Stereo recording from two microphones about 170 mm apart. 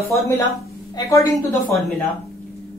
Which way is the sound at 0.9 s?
20° left (ahead or behind).